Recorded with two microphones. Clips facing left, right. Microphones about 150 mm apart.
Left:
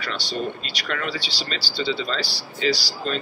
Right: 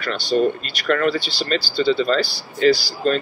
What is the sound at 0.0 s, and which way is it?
Speech, 50° right (ahead or behind).